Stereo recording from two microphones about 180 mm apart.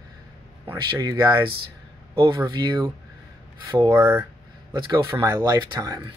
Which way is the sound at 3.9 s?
10° right (ahead or behind).